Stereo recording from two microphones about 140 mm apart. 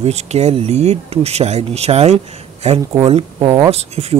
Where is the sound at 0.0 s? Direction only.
50° right (ahead or behind).